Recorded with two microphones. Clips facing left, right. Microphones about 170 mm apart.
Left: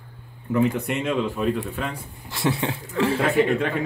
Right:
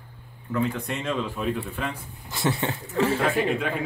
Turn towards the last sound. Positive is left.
turn(degrees=0)  # may be behind; listen again after turning